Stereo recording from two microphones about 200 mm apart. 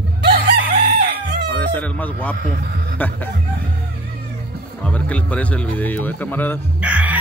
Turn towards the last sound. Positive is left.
turn(degrees=-5)  # may be behind; listen again after turning